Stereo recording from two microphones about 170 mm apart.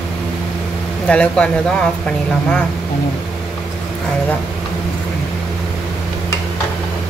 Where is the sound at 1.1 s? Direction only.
5° left (ahead or behind).